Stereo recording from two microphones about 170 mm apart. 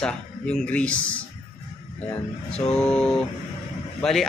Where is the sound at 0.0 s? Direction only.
5° left (ahead or behind).